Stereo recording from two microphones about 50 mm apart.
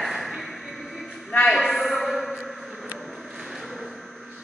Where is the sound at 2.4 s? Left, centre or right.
Right.